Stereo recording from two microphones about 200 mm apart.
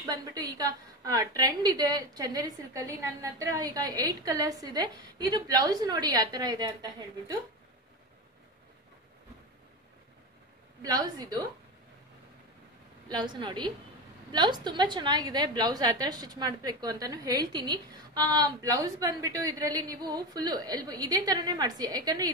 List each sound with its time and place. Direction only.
0.0 s a woman's voice: 20° right (ahead or behind)
10.8 s a woman's voice: 20° right (ahead or behind)
13.1 s a woman's voice: 25° right (ahead or behind)